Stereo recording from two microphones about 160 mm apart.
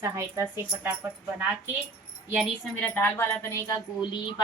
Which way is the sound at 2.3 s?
5° left (ahead or behind).